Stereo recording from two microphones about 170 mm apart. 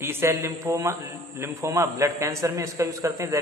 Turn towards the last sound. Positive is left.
turn(degrees=-20)  # may be behind; listen again after turning